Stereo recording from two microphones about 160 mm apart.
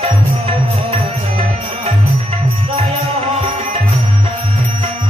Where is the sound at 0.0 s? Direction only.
40° right (ahead or behind).